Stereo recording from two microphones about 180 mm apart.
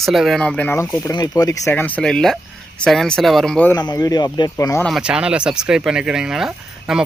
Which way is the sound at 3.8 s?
20° left (ahead or behind).